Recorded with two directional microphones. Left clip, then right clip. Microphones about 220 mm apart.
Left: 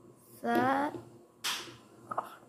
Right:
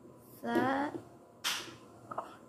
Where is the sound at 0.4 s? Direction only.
20° left (ahead or behind).